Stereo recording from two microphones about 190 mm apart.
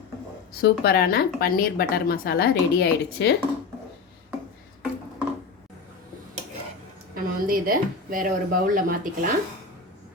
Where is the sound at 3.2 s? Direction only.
65° left (ahead or behind).